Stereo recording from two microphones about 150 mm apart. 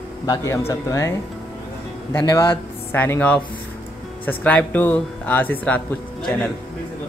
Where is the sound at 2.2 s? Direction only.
30° left (ahead or behind).